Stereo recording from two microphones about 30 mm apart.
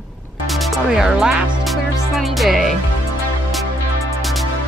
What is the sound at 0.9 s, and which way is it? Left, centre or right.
Speech, right.